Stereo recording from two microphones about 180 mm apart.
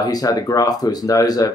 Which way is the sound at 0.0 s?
20° left (ahead or behind).